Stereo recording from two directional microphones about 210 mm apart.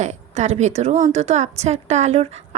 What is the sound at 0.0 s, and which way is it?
A woman's voice, 35° right (ahead or behind).